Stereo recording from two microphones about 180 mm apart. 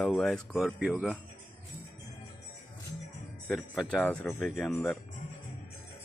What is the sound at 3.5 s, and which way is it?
Speech, centre (ahead or behind).